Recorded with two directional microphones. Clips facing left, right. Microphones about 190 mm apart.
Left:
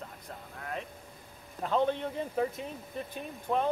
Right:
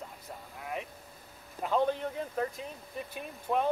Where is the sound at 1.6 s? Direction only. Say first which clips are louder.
Even; 5° right (ahead or behind).